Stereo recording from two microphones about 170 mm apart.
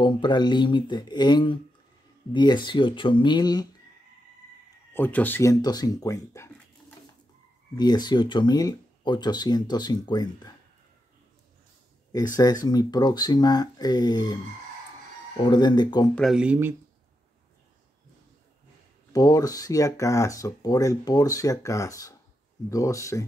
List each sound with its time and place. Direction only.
0.0 s speech: 25° left (ahead or behind)
4.9 s speech: 10° left (ahead or behind)
7.7 s speech: 25° left (ahead or behind)
12.4 s speech: 20° left (ahead or behind)
16.2 s speech: 5° right (ahead or behind)
19.1 s speech: 20° left (ahead or behind)